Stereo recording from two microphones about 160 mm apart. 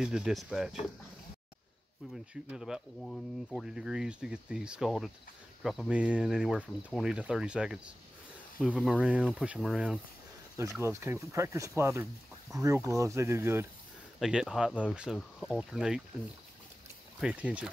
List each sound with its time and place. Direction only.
0.0 s speech: 5° right (ahead or behind)
2.5 s speech: 5° right (ahead or behind)
10.6 s speech: 20° right (ahead or behind)
14.2 s speech: centre (ahead or behind)
17.2 s speech: 5° right (ahead or behind)